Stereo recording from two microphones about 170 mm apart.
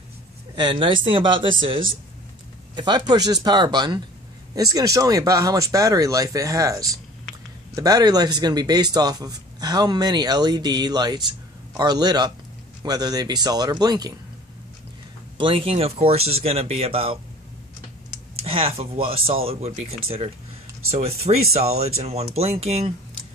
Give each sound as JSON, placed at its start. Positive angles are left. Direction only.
{"t": 0.6, "sound": "speech", "side_deg": -30}
{"t": 15.3, "sound": "speech", "side_deg": -30}
{"t": 18.4, "sound": "speech", "side_deg": -35}